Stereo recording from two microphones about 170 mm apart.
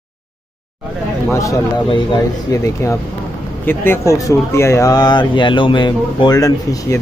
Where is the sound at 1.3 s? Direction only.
20° left (ahead or behind).